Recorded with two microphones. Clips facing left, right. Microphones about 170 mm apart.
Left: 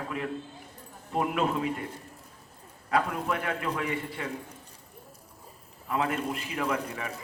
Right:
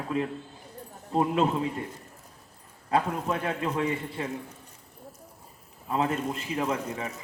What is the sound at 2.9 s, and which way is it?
A man's voice, 30° right (ahead or behind).